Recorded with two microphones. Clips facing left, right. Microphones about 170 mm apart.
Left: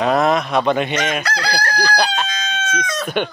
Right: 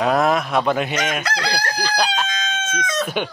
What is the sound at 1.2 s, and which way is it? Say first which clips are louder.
Chicken: left 1 dB; 20° right (ahead or behind).